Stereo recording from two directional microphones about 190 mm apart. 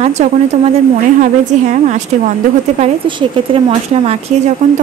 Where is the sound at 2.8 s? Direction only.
25° right (ahead or behind).